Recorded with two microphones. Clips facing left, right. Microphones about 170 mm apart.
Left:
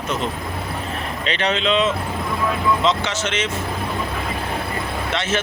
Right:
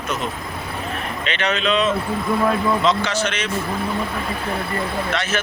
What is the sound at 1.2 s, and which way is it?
Speech, 30° left (ahead or behind).